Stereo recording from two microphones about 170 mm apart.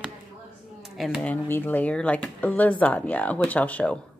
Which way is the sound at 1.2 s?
10° left (ahead or behind).